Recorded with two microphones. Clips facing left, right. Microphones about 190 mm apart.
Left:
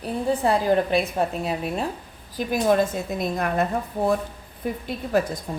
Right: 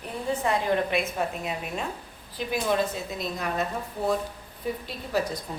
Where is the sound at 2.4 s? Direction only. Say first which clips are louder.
Left 6 dB; 45° left (ahead or behind).